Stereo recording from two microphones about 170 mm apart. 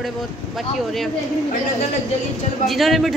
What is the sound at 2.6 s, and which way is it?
Speech, centre (ahead or behind).